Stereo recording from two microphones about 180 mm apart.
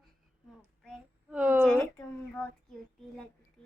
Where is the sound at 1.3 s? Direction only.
10° right (ahead or behind).